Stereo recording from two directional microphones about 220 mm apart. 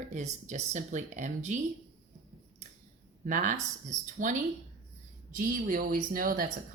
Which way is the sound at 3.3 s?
35° right (ahead or behind).